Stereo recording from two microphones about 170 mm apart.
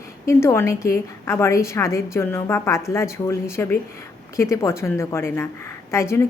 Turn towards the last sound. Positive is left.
turn(degrees=15)  # may be behind; listen again after turning